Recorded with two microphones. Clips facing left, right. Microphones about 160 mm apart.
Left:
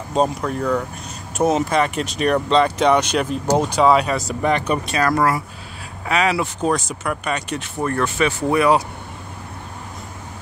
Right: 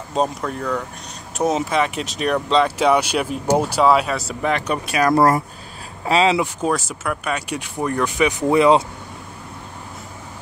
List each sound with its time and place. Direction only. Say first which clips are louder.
0.1 s speech: left 2 dB; centre (ahead or behind)
6.0 s speech: right 3 dB; 25° right (ahead or behind)
6.4 s speech: left 1 dB; 5° right (ahead or behind); by 8.8 s 20° right (ahead or behind)